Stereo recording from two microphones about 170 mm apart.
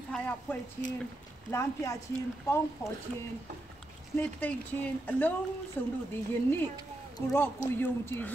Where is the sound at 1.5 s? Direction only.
15° left (ahead or behind).